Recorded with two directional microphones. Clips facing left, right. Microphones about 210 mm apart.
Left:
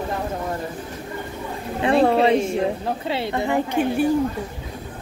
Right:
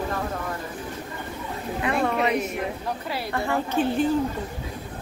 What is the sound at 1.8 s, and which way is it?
A woman's voice, 30° left (ahead or behind).